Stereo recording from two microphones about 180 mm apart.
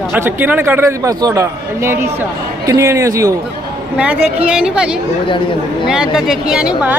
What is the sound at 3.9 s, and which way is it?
A woman's voice, 5° right (ahead or behind).